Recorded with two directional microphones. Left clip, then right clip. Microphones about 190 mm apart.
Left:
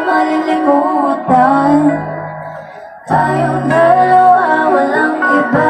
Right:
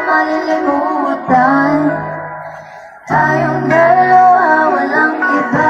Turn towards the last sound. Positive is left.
turn(degrees=40)  # may be behind; listen again after turning